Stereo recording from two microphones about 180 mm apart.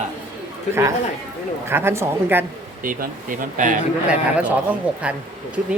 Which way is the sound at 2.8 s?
50° right (ahead or behind).